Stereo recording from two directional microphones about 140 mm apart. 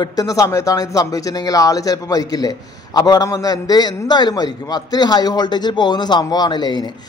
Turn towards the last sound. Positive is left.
turn(degrees=30)  # may be behind; listen again after turning